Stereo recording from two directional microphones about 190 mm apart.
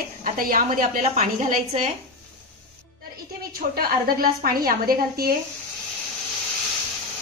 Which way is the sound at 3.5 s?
50° right (ahead or behind).